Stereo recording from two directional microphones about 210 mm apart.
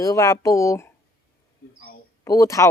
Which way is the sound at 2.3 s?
15° left (ahead or behind).